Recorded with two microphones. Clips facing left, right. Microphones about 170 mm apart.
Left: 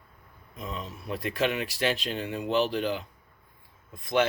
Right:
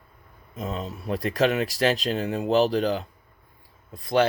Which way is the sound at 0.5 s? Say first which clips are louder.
Right 6 dB; 45° right (ahead or behind).